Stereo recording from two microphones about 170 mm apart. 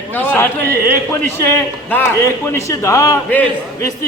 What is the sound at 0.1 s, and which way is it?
A man's voice, 10° left (ahead or behind).